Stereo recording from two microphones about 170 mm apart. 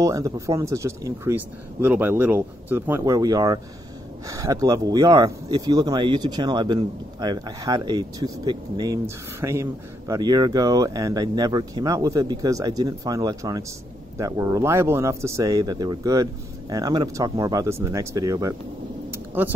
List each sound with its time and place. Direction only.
0.0 s speech: 20° right (ahead or behind)